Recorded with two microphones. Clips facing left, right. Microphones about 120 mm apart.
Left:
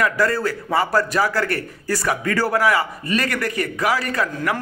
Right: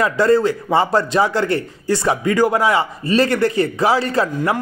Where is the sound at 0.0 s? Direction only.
25° right (ahead or behind).